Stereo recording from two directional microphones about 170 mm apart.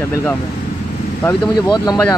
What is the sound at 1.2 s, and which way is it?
Speech, 25° left (ahead or behind).